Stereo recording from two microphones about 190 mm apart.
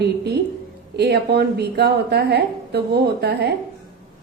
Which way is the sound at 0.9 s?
60° right (ahead or behind).